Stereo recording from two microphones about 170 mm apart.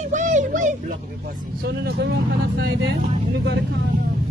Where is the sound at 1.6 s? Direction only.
65° right (ahead or behind).